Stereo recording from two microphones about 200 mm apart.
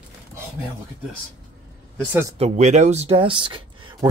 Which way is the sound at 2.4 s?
35° right (ahead or behind).